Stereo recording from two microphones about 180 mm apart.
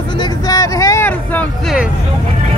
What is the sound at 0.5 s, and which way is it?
Vehicle, 15° left (ahead or behind).